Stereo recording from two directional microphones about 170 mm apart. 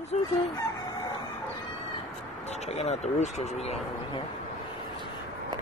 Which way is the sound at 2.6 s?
40° left (ahead or behind).